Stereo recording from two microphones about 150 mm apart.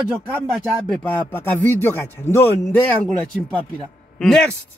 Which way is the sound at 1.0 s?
15° left (ahead or behind).